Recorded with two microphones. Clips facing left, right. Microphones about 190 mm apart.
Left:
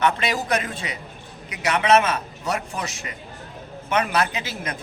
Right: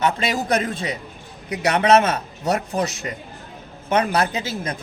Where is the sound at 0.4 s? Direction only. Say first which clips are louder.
Right 4 dB; 35° right (ahead or behind).